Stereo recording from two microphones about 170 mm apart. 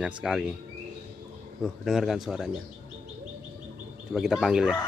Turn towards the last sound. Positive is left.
turn(degrees=-5)  # may be behind; listen again after turning